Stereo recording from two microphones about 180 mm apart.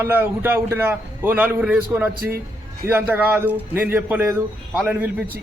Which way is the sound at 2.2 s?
55° right (ahead or behind).